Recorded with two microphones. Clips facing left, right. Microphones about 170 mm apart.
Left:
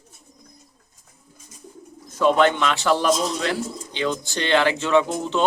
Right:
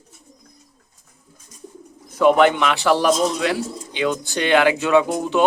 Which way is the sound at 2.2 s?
10° right (ahead or behind).